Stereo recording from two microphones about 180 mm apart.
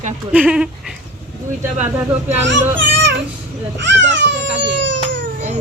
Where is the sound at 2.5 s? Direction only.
85° right.